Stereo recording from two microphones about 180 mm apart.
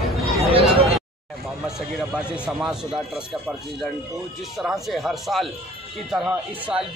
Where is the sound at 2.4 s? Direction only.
5° right (ahead or behind).